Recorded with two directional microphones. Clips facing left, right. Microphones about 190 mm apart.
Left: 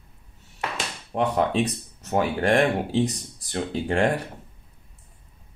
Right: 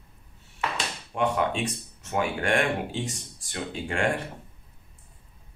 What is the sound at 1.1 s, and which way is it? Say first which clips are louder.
Speech: left 3 dB; 35° left (ahead or behind).